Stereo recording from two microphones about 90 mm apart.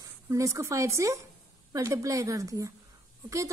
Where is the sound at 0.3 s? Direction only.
35° right (ahead or behind).